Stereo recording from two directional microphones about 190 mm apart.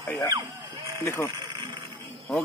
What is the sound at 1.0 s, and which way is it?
Speech, 15° left (ahead or behind).